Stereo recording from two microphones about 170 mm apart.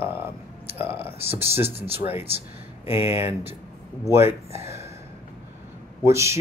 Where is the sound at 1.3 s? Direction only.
15° right (ahead or behind).